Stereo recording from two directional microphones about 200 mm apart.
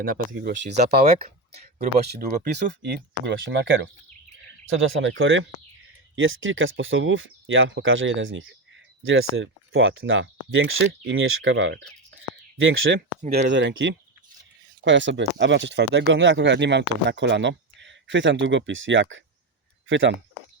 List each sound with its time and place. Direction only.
0.0 s speech: 50° right (ahead or behind)
4.7 s speech: 75° right (ahead or behind)
12.5 s speech: 80° right
13.5 s speech: 65° right (ahead or behind)